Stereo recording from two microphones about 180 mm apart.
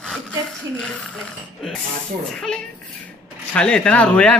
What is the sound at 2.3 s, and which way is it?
Speech, 5° left (ahead or behind).